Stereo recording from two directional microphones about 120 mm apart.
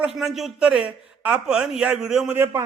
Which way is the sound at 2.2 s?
20° right (ahead or behind).